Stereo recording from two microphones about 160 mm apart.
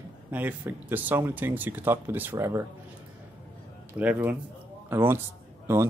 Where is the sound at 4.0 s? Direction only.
10° right (ahead or behind).